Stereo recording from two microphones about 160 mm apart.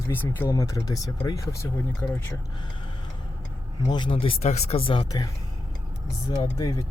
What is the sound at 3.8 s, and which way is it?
Speech, 30° left (ahead or behind).